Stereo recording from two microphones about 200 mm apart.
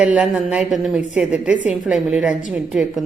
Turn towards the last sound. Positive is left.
turn(degrees=0)  # may be behind; listen again after turning